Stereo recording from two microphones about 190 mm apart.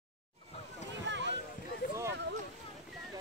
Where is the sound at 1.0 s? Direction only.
70° right (ahead or behind).